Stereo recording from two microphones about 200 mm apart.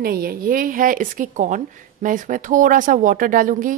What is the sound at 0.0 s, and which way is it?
Speech, 50° right (ahead or behind).